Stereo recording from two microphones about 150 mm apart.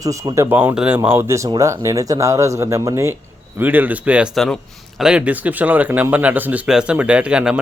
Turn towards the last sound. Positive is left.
turn(degrees=-5)  # may be behind; listen again after turning